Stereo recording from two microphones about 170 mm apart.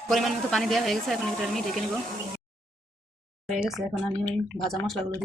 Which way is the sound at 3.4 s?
Centre (ahead or behind).